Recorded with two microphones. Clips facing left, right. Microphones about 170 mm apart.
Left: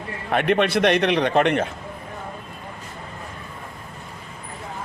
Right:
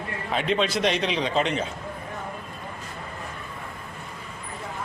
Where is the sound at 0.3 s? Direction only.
60° left (ahead or behind).